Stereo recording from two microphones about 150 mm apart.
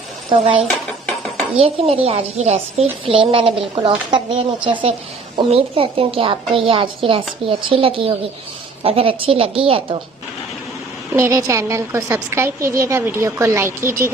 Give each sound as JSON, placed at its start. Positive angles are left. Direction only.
{"t": 0.3, "sound": "a woman's voice", "side_deg": -40}
{"t": 11.1, "sound": "a woman's voice", "side_deg": -20}